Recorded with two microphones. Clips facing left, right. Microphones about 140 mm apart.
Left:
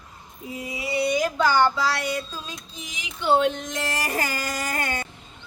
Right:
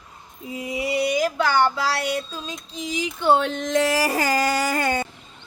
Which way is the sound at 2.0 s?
25° right (ahead or behind).